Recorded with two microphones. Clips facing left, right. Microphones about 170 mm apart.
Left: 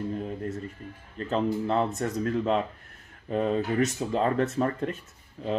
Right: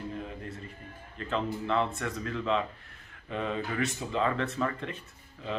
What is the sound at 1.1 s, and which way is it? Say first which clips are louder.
Speech: left 5 dB; 40° left (ahead or behind).